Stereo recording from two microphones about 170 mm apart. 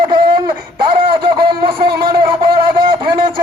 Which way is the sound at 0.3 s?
30° right (ahead or behind).